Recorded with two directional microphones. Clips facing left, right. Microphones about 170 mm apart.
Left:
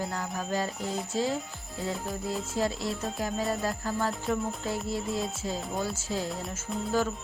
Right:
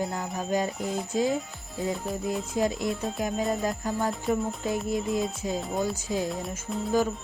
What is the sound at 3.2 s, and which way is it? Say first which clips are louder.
Speech: right 2 dB; 20° right (ahead or behind).